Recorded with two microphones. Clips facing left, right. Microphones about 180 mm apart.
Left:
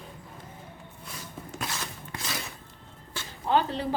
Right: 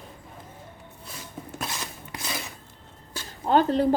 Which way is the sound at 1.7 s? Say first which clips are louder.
Right 1 dB; 15° right (ahead or behind).